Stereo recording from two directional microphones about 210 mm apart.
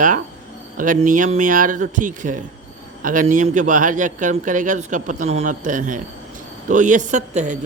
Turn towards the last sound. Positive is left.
turn(degrees=-35)  # may be behind; listen again after turning